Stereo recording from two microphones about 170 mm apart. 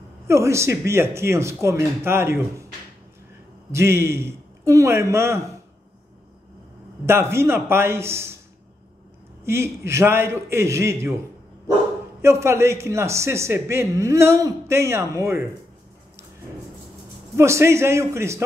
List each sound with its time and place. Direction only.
0.3 s a man's voice: 15° right (ahead or behind)
3.7 s a man's voice: 15° right (ahead or behind)
7.1 s a man's voice: 15° right (ahead or behind)
9.4 s a man's voice: 15° right (ahead or behind)
12.2 s a man's voice: 15° right (ahead or behind)
17.4 s a man's voice: 15° right (ahead or behind)